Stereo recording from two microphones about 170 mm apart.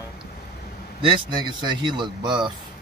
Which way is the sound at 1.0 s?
25° right (ahead or behind).